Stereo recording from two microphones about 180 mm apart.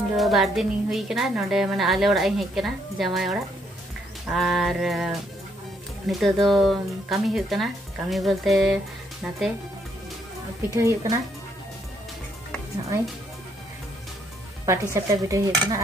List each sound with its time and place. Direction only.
0.2 s speech: centre (ahead or behind)
10.7 s dishes: 15° right (ahead or behind)
15.0 s dishes: 15° right (ahead or behind)